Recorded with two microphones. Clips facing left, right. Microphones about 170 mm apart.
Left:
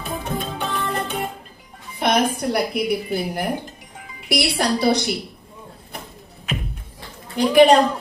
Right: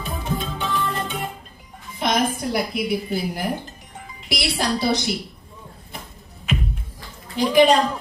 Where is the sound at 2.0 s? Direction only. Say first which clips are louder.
Left 2 dB; 65° left (ahead or behind).